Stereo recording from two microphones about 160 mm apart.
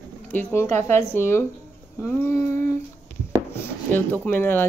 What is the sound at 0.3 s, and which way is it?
A woman's voice, 15° left (ahead or behind).